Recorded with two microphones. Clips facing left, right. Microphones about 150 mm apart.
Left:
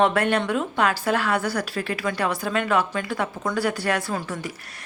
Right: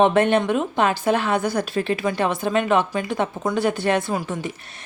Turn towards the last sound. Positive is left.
turn(degrees=-15)  # may be behind; listen again after turning